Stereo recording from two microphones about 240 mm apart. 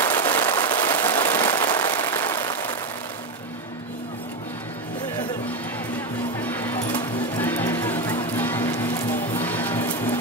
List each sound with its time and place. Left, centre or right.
0.0 s a sound: centre
6.4 s music: centre
6.9 s music: centre
7.4 s music: centre